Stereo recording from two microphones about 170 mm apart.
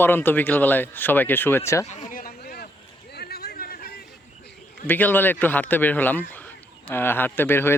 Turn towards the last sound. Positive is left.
turn(degrees=15)  # may be behind; listen again after turning